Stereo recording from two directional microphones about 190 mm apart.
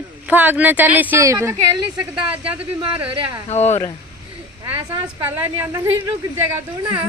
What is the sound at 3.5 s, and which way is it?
Speech, 35° left (ahead or behind).